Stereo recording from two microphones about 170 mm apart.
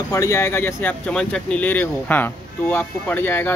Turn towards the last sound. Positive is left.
turn(degrees=15)  # may be behind; listen again after turning